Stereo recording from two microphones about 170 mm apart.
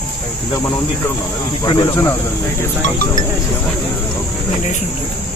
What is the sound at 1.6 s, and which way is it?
Speech, 25° left (ahead or behind).